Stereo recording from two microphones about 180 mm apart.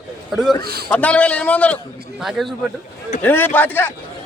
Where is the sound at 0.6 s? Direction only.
60° right (ahead or behind).